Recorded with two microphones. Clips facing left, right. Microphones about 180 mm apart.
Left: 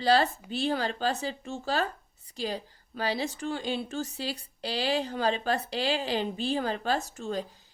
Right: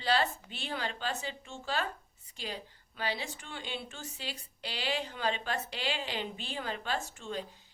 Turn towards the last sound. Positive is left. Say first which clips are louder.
# left 6 dB
turn(degrees=40)  # may be behind; listen again after turning